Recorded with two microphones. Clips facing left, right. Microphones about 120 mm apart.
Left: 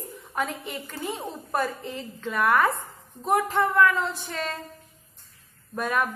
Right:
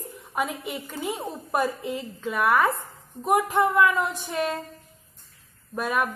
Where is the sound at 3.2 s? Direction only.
15° right (ahead or behind).